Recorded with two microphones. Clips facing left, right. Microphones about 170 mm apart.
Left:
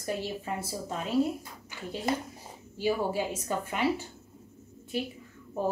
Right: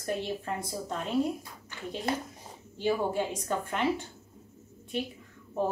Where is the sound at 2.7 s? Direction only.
5° left (ahead or behind).